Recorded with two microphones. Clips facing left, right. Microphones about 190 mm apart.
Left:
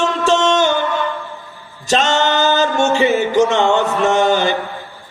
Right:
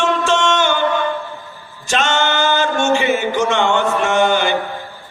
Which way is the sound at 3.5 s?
40° left (ahead or behind).